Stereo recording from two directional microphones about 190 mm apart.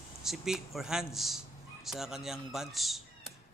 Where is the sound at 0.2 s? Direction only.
Centre (ahead or behind).